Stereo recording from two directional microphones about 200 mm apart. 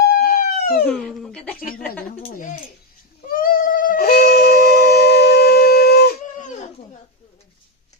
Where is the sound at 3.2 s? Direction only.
45° left (ahead or behind).